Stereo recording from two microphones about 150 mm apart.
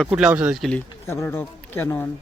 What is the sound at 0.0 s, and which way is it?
Speech, 5° right (ahead or behind).